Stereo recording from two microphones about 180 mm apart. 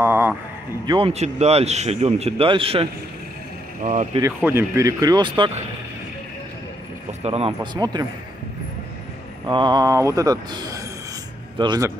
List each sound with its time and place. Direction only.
0.0 s a sound: 15° right (ahead or behind)
0.8 s a man's voice: 30° right (ahead or behind)
3.8 s speech: 45° right (ahead or behind)
4.2 s speech: 15° right (ahead or behind)
7.2 s speech: 35° right (ahead or behind)
9.5 s speech: 25° right (ahead or behind)